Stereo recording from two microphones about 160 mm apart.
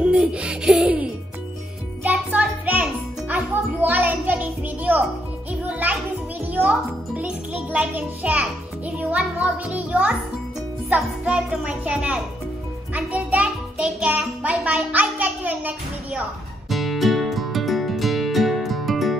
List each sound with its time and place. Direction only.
0.0 s music: 5° right (ahead or behind)
10.9 s a child's voice: 5° right (ahead or behind)
16.6 s music: centre (ahead or behind)